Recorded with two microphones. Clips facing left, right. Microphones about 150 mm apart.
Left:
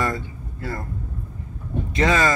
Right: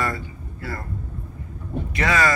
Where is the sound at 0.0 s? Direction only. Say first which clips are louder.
Left 2 dB; 20° left (ahead or behind).